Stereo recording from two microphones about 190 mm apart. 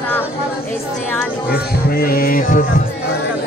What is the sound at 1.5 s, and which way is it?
Music, 50° left (ahead or behind).